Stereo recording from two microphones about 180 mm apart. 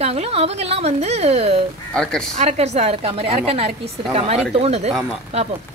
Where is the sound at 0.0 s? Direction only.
35° right (ahead or behind).